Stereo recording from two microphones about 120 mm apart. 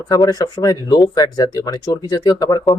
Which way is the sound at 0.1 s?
35° left (ahead or behind).